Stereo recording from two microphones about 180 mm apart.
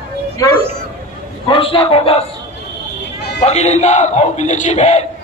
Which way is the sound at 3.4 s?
35° left (ahead or behind).